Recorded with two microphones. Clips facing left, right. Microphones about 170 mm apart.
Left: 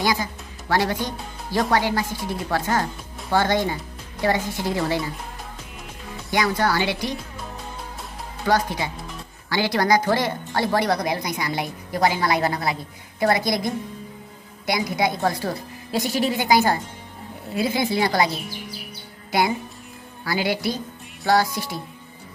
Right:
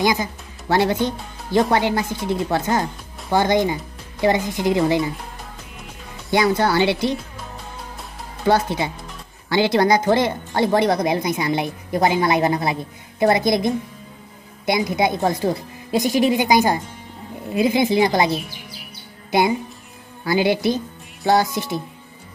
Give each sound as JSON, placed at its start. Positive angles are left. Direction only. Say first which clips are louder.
{"t": 0.0, "sound": "a woman's voice", "louder": "right 3 dB", "side_deg": -20}
{"t": 6.3, "sound": "a woman's voice", "louder": "right 4 dB", "side_deg": -25}
{"t": 8.5, "sound": "a woman's voice", "louder": "right 3 dB", "side_deg": -25}
{"t": 20.2, "sound": "a woman's voice", "louder": "right 6 dB", "side_deg": -20}